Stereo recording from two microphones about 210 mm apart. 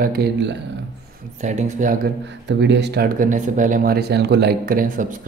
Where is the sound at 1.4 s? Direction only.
35° right (ahead or behind).